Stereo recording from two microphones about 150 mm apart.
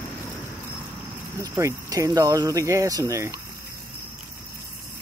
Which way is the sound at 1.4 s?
20° right (ahead or behind).